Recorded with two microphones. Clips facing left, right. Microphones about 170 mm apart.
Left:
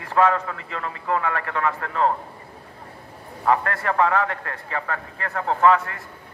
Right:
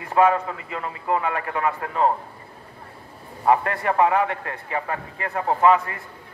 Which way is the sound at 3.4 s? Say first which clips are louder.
Right 2 dB; 15° right (ahead or behind).